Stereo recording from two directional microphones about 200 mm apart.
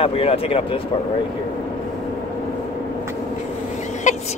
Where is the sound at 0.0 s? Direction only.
30° left (ahead or behind).